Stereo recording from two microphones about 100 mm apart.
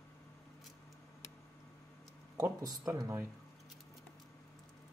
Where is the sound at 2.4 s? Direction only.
35° right (ahead or behind).